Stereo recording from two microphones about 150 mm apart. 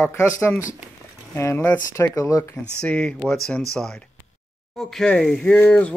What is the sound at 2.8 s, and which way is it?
Speech, 5° left (ahead or behind).